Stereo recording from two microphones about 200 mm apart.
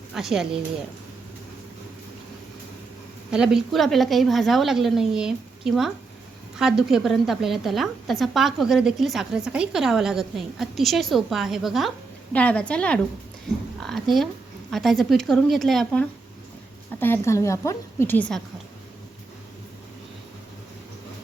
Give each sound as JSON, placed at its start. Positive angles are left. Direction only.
{"t": 0.1, "sound": "speech", "side_deg": 0}
{"t": 3.3, "sound": "a woman's voice", "side_deg": -5}